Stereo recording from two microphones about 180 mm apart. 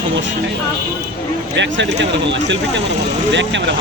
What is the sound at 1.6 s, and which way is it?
Speech, 80° right.